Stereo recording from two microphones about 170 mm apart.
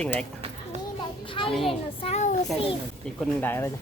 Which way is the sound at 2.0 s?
45° left (ahead or behind).